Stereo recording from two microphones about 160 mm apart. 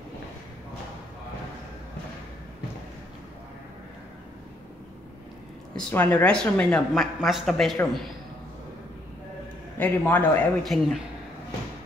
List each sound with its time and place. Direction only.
5.8 s a woman's voice: 10° left (ahead or behind)
9.8 s a man's voice: 10° left (ahead or behind)